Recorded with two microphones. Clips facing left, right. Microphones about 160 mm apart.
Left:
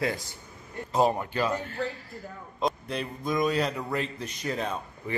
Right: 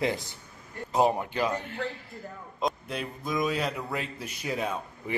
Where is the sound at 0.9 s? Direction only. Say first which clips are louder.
Even; 15° right (ahead or behind).